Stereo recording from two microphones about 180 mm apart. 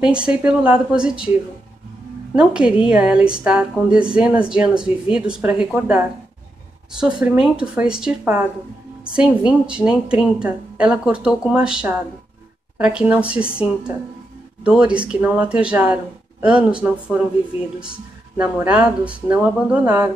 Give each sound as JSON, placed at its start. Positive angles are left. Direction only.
{"t": 0.0, "sound": "speech", "side_deg": -5}
{"t": 2.3, "sound": "speech", "side_deg": -5}
{"t": 17.5, "sound": "speech", "side_deg": 35}
{"t": 18.4, "sound": "speech", "side_deg": -5}